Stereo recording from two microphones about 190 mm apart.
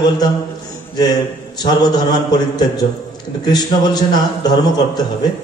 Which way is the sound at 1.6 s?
20° left (ahead or behind).